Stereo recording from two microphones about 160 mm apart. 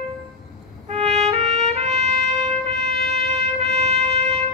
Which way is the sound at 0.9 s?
40° right (ahead or behind).